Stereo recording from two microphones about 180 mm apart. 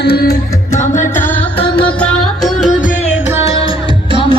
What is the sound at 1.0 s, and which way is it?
Music, 10° left (ahead or behind).